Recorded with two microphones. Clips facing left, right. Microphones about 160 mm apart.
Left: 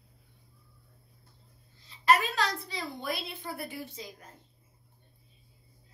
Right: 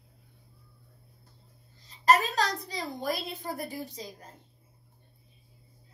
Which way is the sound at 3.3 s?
40° right (ahead or behind).